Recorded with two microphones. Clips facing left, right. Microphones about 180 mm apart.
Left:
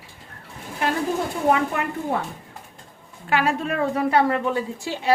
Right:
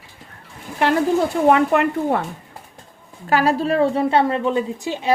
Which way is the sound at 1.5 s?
65° right (ahead or behind).